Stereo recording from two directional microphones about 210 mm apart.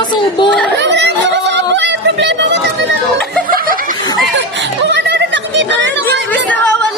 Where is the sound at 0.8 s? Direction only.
55° right (ahead or behind).